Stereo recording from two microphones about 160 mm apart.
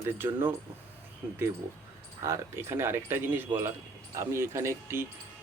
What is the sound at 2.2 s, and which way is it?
Speech, 15° right (ahead or behind).